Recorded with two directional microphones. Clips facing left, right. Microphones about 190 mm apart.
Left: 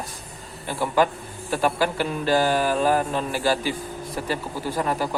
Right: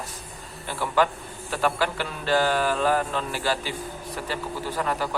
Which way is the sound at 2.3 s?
10° left (ahead or behind).